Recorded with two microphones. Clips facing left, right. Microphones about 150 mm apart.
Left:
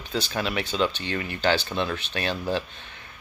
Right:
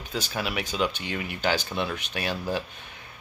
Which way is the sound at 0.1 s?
10° right (ahead or behind).